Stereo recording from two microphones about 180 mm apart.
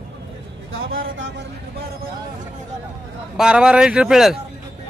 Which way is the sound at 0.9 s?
90° right.